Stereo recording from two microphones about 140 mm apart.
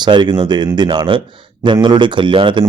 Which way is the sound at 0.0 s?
30° right (ahead or behind).